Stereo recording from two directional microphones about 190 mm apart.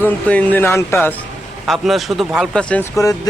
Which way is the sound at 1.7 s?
Centre (ahead or behind).